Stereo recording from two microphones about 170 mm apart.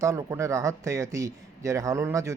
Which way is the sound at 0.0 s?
20° right (ahead or behind).